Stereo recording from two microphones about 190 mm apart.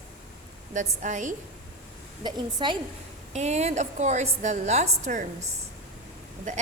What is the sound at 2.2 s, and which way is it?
Speech, 25° right (ahead or behind).